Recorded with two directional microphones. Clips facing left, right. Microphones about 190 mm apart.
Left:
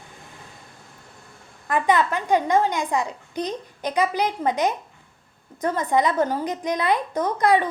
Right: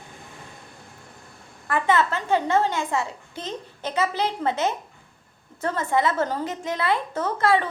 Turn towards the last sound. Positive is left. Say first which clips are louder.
# left 2 dB
turn(degrees=15)  # may be behind; listen again after turning